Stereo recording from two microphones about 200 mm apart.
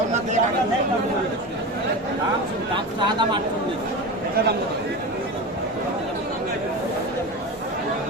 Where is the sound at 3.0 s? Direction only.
25° right (ahead or behind).